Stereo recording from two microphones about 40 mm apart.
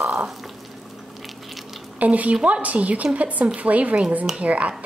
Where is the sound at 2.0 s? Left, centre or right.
Right.